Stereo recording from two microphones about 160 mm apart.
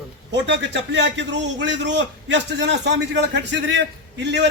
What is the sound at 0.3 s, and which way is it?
A man's voice, 90° right.